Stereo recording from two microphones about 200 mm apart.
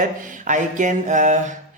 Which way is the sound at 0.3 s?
40° right (ahead or behind).